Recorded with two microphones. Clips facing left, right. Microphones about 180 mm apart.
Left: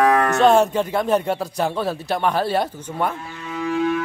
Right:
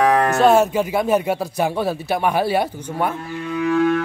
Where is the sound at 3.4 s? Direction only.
60° right (ahead or behind).